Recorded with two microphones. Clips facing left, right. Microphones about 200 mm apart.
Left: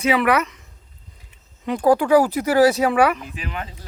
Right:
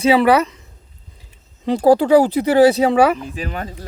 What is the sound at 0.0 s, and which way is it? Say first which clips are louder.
Speech: right 5 dB; 30° right (ahead or behind).